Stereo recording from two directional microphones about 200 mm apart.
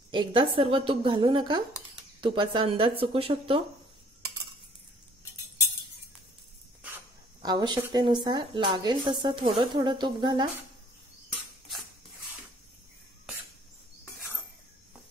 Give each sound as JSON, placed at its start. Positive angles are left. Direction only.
{"t": 0.1, "sound": "a woman's voice", "side_deg": -25}
{"t": 7.4, "sound": "a woman's voice", "side_deg": -20}